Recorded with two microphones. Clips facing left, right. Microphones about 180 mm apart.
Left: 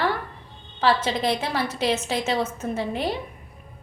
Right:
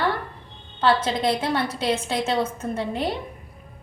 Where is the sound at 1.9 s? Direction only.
30° right (ahead or behind).